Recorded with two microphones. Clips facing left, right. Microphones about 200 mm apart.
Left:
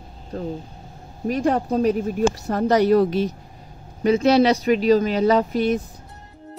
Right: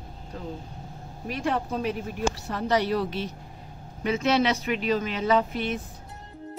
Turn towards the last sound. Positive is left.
turn(degrees=40)  # may be behind; listen again after turning